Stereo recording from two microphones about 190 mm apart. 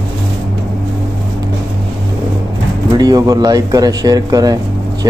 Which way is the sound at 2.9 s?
20° right (ahead or behind).